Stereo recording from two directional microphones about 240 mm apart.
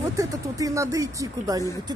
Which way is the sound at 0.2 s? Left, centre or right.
Centre.